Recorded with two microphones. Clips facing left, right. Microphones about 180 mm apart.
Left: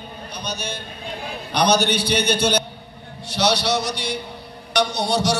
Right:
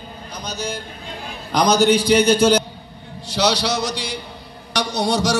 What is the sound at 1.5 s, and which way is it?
A man's voice, 90° right.